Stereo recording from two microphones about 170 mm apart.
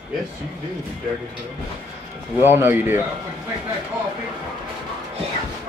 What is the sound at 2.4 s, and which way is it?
Speech, 15° right (ahead or behind).